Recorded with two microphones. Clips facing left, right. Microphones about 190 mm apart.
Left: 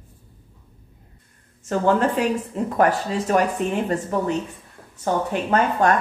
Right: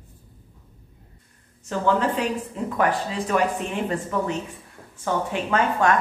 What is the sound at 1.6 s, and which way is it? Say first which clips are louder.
Speech: left 3 dB; 50° left (ahead or behind).